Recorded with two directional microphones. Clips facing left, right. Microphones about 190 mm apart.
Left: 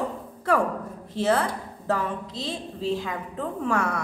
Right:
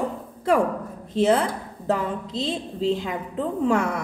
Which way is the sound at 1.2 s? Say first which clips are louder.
Right 4 dB; 20° right (ahead or behind).